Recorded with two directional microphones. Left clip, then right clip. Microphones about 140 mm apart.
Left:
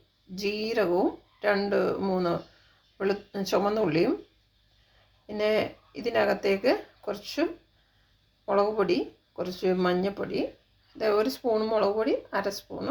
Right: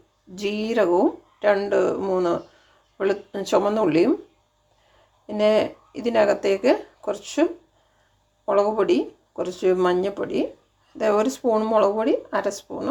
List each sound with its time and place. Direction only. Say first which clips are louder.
0.3 s speech: right 5 dB; 25° right (ahead or behind)
5.2 s speech: right 7 dB; 30° right (ahead or behind)
8.4 s speech: right 5 dB; 30° right (ahead or behind)